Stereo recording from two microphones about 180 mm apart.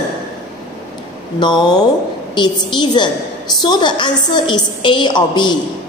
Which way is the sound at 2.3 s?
25° left (ahead or behind).